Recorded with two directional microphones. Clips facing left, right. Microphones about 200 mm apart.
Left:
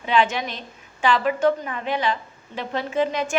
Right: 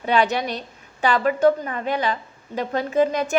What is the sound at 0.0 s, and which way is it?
A woman's voice, 40° right (ahead or behind).